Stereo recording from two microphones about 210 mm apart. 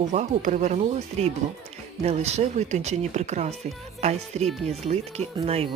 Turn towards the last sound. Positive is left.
turn(degrees=-30)  # may be behind; listen again after turning